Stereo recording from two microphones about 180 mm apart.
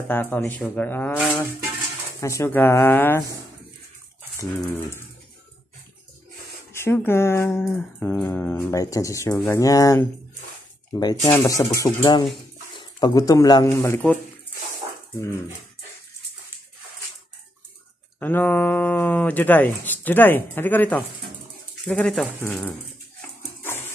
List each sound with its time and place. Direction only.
0.1 s speech: 10° left (ahead or behind)
2.1 s speech: 15° left (ahead or behind)
4.4 s speech: 15° left (ahead or behind)
6.7 s speech: 15° left (ahead or behind)
18.2 s speech: 10° left (ahead or behind)
23.6 s a sound: 10° left (ahead or behind)